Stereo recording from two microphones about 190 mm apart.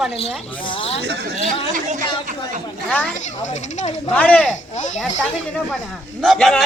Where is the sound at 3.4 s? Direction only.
40° left (ahead or behind).